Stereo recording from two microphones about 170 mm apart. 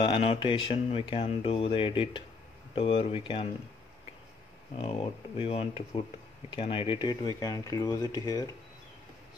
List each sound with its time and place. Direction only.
0.0 s speech: 35° left (ahead or behind)
5.4 s speech: 35° left (ahead or behind)